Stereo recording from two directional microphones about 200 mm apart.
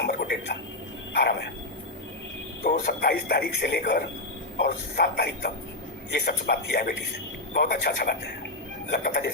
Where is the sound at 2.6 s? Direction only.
50° left (ahead or behind).